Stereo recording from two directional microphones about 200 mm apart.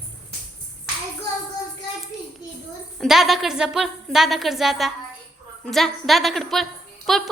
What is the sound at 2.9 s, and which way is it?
A woman's voice, centre (ahead or behind).